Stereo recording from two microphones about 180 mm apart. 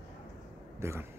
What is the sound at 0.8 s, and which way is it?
Speech, 15° right (ahead or behind).